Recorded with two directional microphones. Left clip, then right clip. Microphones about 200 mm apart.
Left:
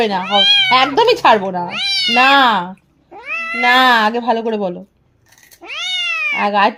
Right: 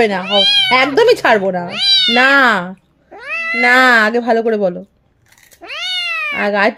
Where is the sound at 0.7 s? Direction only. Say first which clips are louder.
Right 1 dB; 30° right (ahead or behind).